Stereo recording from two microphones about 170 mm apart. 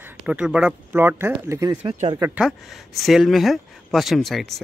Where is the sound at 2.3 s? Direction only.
Centre (ahead or behind).